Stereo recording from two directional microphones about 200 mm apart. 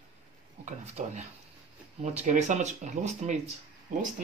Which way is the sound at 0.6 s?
35° right (ahead or behind).